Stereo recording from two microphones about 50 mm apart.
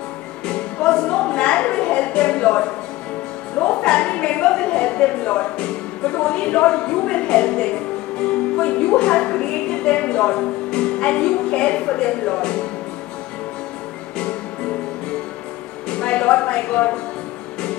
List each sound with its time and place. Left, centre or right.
0.5 s music: centre
3.5 s a woman's voice: left
8.2 s music: left
15.9 s a woman's voice: left